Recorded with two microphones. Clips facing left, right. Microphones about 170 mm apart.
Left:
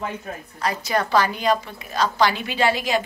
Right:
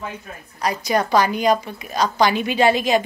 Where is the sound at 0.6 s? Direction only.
15° right (ahead or behind).